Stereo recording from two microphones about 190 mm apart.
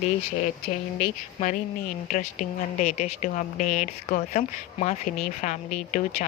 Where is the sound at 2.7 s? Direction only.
40° left (ahead or behind).